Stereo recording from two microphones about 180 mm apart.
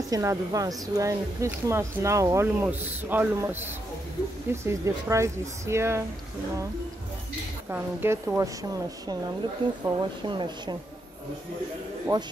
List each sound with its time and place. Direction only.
0.1 s speech: 20° right (ahead or behind)
7.7 s speech: 10° right (ahead or behind)
9.8 s speech: 25° right (ahead or behind)